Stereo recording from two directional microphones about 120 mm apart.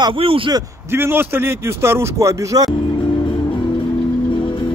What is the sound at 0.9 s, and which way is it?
Speech, 20° right (ahead or behind).